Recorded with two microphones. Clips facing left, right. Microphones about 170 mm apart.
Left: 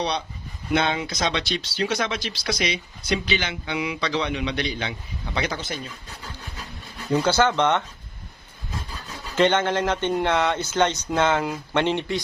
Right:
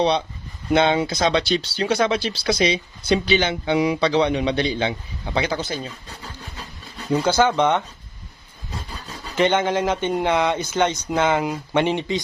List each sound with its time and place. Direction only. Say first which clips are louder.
0.7 s speech: right 5 dB; 30° right (ahead or behind)
7.1 s speech: right 2 dB; 10° right (ahead or behind)
9.3 s speech: right 1 dB; 10° right (ahead or behind)